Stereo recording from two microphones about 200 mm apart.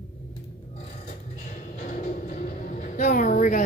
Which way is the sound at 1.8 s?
40° left (ahead or behind).